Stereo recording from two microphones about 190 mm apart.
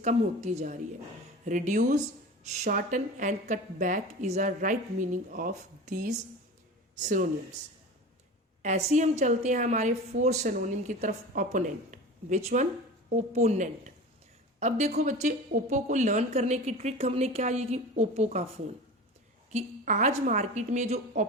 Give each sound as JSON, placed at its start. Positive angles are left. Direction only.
{"t": 0.0, "sound": "a woman's voice", "side_deg": -40}
{"t": 8.6, "sound": "a woman's voice", "side_deg": -40}